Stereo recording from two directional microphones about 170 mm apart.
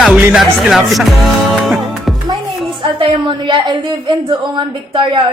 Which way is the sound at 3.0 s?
30° right (ahead or behind).